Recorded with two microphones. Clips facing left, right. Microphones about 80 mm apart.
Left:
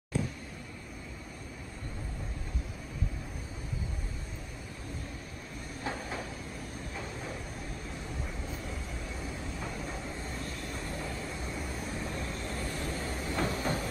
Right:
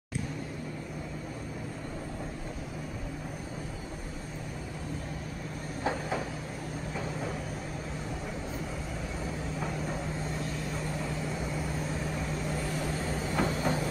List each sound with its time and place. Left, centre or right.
5.9 s train: right
12.2 s vehicle: centre
13.3 s train: centre